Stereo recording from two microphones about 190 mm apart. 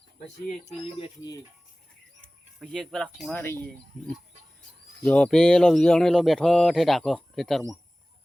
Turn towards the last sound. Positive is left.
turn(degrees=0)  # may be behind; listen again after turning